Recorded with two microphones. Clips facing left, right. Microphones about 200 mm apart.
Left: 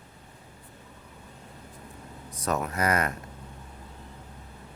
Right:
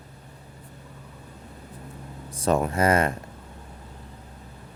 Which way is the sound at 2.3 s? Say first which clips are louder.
Right 6 dB; 30° right (ahead or behind).